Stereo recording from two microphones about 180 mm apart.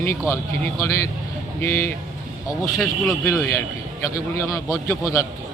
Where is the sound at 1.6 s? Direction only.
15° left (ahead or behind).